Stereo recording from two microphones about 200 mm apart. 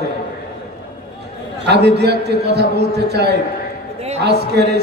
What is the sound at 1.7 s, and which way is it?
A man's voice, 55° right (ahead or behind).